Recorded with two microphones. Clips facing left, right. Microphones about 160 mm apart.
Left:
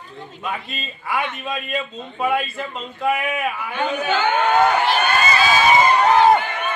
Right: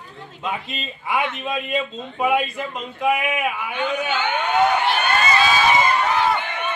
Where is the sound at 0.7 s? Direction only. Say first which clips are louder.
Right 1 dB; 20° right (ahead or behind).